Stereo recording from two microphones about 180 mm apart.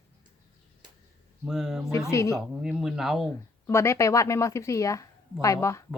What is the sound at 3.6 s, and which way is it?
Speech, 15° left (ahead or behind).